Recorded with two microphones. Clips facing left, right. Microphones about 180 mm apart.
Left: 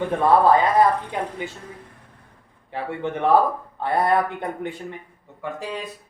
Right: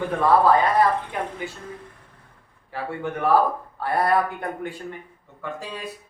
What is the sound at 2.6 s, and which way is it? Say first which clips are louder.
Speech: left 2 dB; 20° left (ahead or behind).